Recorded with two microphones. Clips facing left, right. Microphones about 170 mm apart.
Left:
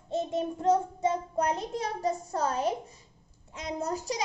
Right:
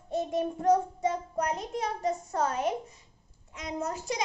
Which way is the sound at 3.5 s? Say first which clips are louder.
Left 1 dB; 30° left (ahead or behind).